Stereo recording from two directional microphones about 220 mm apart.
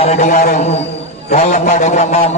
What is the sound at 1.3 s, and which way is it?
A man's voice, 30° left (ahead or behind).